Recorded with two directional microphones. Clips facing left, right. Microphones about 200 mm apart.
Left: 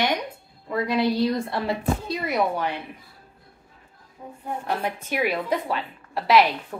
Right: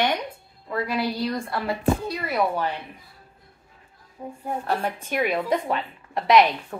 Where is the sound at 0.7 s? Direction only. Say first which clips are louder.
Left 3 dB; 20° left (ahead or behind).